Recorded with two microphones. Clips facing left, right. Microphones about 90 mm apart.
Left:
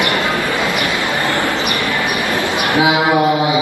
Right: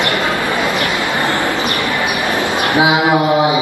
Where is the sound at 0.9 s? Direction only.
20° right (ahead or behind).